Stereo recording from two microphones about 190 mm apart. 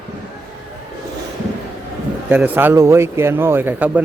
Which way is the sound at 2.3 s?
10° right (ahead or behind).